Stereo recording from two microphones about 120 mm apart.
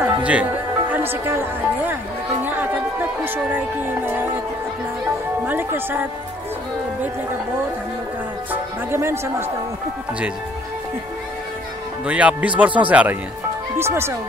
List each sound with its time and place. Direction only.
0.0 s music: 10° right (ahead or behind)
0.9 s a woman's voice: 20° right (ahead or behind)
2.4 s music: 15° right (ahead or behind)
3.5 s speech: 15° right (ahead or behind)
5.5 s speech: 15° right (ahead or behind)
8.5 s a woman's voice: 20° right (ahead or behind)
12.1 s a woman's voice: 10° right (ahead or behind)